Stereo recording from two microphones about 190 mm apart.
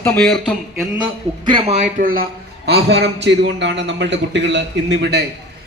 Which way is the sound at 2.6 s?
60° right (ahead or behind).